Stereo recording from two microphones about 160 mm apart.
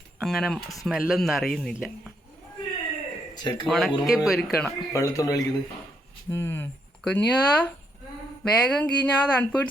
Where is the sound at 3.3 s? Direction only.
25° left (ahead or behind).